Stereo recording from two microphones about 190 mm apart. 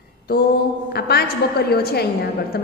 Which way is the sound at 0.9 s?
55° left (ahead or behind).